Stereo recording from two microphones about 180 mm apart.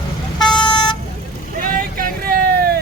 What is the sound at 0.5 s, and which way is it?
Vehicle, 25° left (ahead or behind).